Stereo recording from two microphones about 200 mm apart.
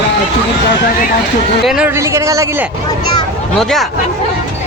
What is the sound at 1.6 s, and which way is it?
A man's voice, 5° right (ahead or behind).